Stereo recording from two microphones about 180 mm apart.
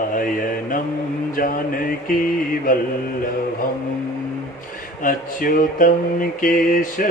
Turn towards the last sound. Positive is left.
turn(degrees=50)  # may be behind; listen again after turning